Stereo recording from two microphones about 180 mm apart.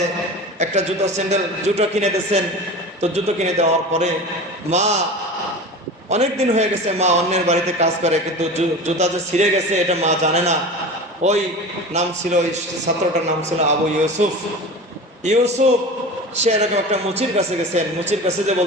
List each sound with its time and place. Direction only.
0.6 s a man's voice: 40° right (ahead or behind)
6.1 s a man's voice: 40° right (ahead or behind)